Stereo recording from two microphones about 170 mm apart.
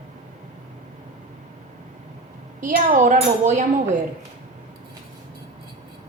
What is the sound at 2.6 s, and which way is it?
Speech, 55° right (ahead or behind).